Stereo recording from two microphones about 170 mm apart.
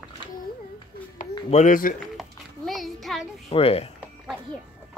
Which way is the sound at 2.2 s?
Centre (ahead or behind).